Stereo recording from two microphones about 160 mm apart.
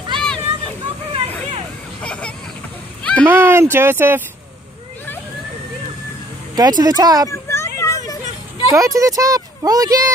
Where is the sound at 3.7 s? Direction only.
15° right (ahead or behind).